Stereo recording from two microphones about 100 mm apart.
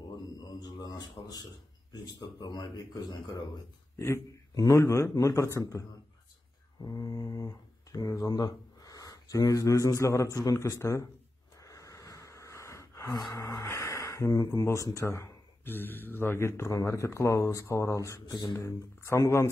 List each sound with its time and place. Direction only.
0.4 s a sound: 40° left (ahead or behind)
1.9 s speech: 40° left (ahead or behind)
4.6 s a man's voice: 30° left (ahead or behind)
11.6 s a sound: 35° left (ahead or behind)
13.1 s speech: 45° left (ahead or behind)
13.4 s speech: 25° left (ahead or behind)
18.2 s speech: 50° left (ahead or behind)
18.6 s speech: 30° left (ahead or behind)